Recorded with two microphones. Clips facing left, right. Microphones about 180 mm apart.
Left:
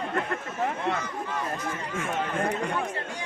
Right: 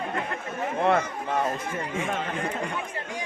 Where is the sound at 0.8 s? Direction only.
60° right (ahead or behind).